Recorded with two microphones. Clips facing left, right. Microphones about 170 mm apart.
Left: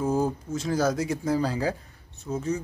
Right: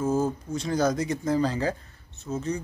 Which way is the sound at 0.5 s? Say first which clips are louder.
Even; 5° left (ahead or behind).